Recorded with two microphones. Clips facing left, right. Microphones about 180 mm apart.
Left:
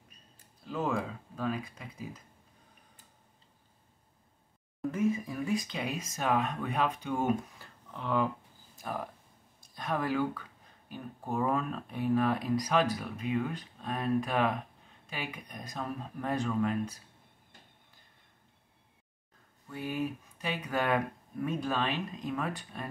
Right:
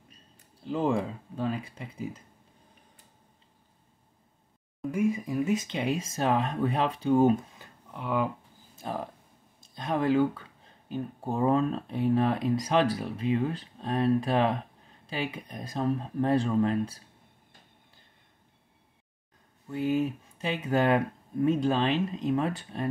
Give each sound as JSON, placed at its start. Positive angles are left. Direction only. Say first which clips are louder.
{"t": 0.6, "sound": "speech", "louder": "right 5 dB", "side_deg": -30}
{"t": 4.9, "sound": "speech", "louder": "right 4 dB", "side_deg": -15}
{"t": 7.5, "sound": "a sound", "louder": "right 2 dB", "side_deg": -10}
{"t": 8.7, "sound": "a sound", "louder": "right 3 dB", "side_deg": -25}
{"t": 9.6, "sound": "speech", "louder": "right 4 dB", "side_deg": -25}
{"t": 19.7, "sound": "speech", "louder": "right 7 dB", "side_deg": -25}